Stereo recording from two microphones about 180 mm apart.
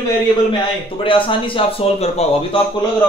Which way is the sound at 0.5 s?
30° left (ahead or behind).